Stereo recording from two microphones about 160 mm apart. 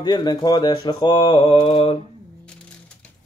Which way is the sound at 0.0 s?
25° left (ahead or behind).